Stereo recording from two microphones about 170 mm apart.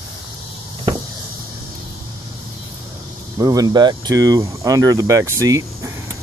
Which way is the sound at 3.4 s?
20° right (ahead or behind).